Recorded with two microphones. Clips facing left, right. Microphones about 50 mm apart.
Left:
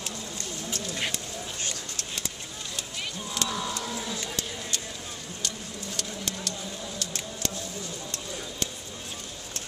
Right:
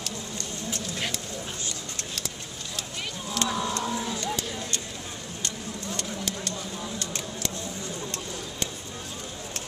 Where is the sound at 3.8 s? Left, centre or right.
Right.